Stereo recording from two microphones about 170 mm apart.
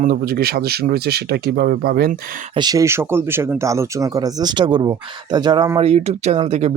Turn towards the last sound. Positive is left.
turn(degrees=-40)  # may be behind; listen again after turning